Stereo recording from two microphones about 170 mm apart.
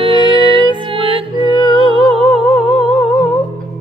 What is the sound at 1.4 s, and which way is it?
Music, 25° left (ahead or behind).